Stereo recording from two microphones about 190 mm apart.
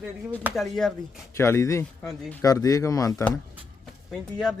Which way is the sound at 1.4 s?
15° left (ahead or behind).